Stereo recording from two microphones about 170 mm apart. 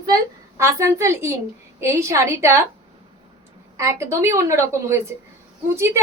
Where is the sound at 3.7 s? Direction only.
15° right (ahead or behind).